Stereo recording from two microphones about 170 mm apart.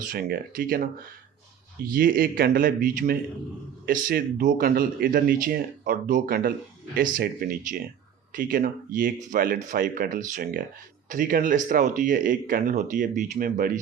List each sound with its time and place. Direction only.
0.1 s speech: 55° right (ahead or behind)